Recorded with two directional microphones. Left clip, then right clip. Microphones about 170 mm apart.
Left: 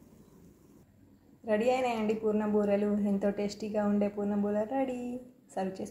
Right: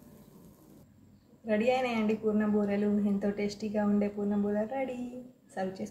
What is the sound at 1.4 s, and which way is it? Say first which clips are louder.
Speech: even; 30° left (ahead or behind).